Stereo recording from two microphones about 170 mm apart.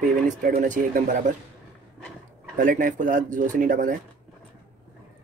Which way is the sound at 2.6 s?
50° right (ahead or behind).